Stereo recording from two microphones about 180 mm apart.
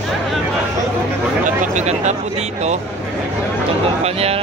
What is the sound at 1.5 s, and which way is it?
Speech, 40° right (ahead or behind).